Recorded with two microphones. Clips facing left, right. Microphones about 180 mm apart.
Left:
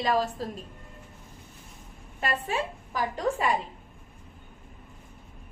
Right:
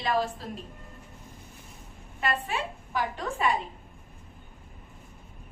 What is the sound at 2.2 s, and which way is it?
Speech, 40° left (ahead or behind).